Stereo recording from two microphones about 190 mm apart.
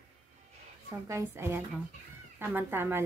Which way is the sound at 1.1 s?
15° right (ahead or behind).